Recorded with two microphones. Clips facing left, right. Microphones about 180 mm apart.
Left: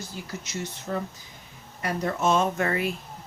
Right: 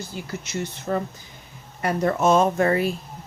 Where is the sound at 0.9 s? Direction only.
75° right (ahead or behind).